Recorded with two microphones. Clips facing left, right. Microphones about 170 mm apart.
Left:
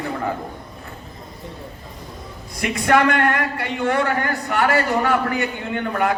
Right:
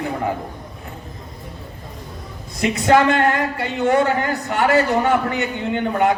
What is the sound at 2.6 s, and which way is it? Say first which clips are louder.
A man's voice: right 2 dB; 25° right (ahead or behind).